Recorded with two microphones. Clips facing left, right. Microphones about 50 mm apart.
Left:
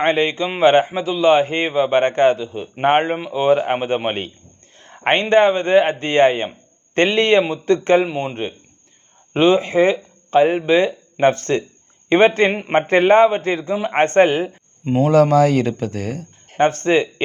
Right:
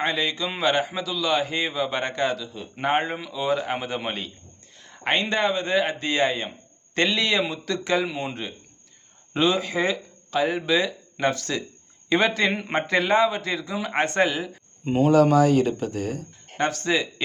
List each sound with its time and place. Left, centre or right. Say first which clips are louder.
0.0 s a man's voice: left 8 dB; left
2.9 s a man's voice: left 6 dB; left
16.6 s a man's voice: left 8 dB; left